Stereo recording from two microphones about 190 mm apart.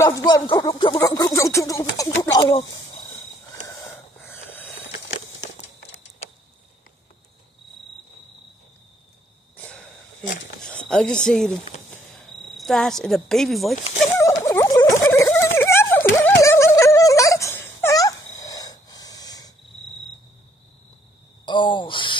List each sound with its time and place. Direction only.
0.0 s speech: 20° left (ahead or behind)
3.6 s wheeze: 15° left (ahead or behind)
9.6 s wheeze: 5° left (ahead or behind)
10.8 s speech: 5° left (ahead or behind)
11.9 s cricket: 5° left (ahead or behind)
14.1 s a sound: 15° left (ahead or behind)
21.5 s speech: 25° left (ahead or behind)